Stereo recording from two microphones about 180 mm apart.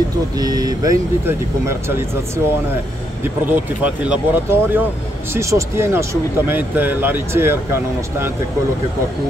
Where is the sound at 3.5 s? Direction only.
10° right (ahead or behind).